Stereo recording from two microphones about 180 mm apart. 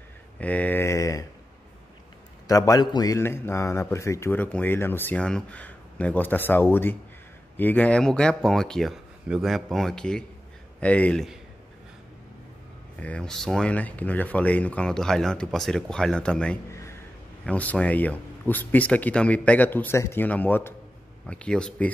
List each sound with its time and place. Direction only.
0.4 s mantra: 10° left (ahead or behind)
2.4 s a man's voice: 20° left (ahead or behind); by 11.3 s 5° left (ahead or behind)
13.0 s a man's voice: 5° left (ahead or behind)